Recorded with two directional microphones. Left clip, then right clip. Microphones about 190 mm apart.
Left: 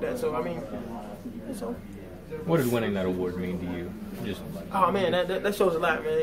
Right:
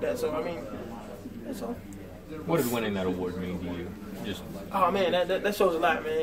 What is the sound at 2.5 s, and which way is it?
Speech, 15° left (ahead or behind).